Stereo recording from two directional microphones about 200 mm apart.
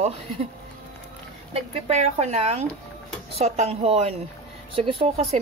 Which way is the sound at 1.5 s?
35° right (ahead or behind).